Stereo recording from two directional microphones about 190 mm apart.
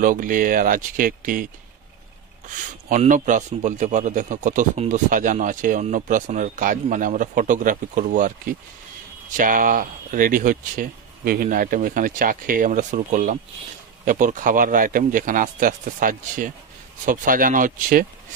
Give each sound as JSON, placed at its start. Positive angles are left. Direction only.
{"t": 0.0, "sound": "speech", "side_deg": -45}